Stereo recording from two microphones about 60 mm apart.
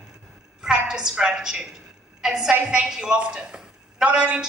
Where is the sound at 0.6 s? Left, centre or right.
Centre.